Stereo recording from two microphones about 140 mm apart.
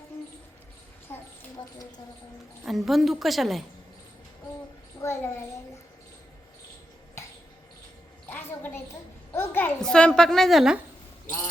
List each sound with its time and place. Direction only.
1.1 s a sound: 15° left (ahead or behind)
2.6 s a child's voice: centre (ahead or behind)
5.0 s a child's voice: 15° left (ahead or behind)
8.3 s a woman's voice: 15° left (ahead or behind); by 10.8 s centre (ahead or behind)